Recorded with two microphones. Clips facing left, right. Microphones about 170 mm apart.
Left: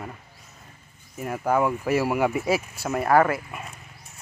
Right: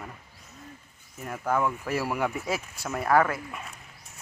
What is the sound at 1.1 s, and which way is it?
Speech, 5° left (ahead or behind).